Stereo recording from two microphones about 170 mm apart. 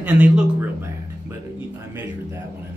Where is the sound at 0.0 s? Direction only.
10° right (ahead or behind).